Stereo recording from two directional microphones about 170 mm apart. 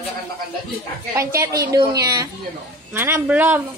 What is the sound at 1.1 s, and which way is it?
A woman's voice, 15° right (ahead or behind).